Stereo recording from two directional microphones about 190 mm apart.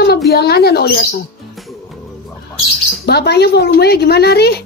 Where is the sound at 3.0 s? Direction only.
60° left (ahead or behind).